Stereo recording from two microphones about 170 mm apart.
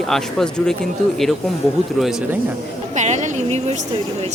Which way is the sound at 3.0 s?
45° right (ahead or behind).